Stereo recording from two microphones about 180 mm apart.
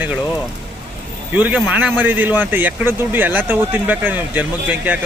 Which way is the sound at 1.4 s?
10° right (ahead or behind).